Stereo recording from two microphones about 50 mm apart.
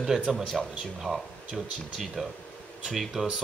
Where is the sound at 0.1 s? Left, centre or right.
Centre.